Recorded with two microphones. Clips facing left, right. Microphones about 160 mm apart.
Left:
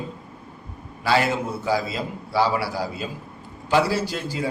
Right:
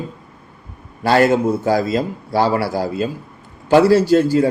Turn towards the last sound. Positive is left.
turn(degrees=-45)  # may be behind; listen again after turning